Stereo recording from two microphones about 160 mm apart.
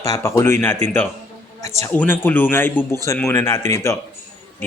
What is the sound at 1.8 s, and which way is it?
Speech, 10° left (ahead or behind).